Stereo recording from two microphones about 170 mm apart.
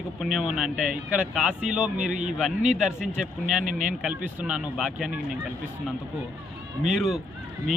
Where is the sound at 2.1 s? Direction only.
45° right (ahead or behind).